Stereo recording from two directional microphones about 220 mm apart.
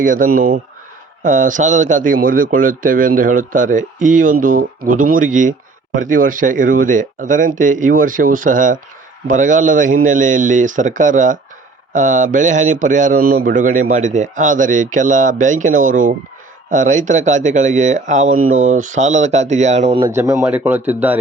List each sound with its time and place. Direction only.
0.0 s speech: 35° right (ahead or behind)
20.1 s speech: 15° right (ahead or behind)